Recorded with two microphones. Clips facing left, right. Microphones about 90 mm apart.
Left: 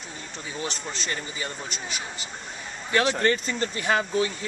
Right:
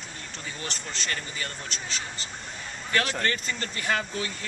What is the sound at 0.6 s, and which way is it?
Speech, centre (ahead or behind).